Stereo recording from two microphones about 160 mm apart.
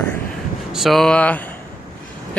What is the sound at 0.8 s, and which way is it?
Speech, centre (ahead or behind).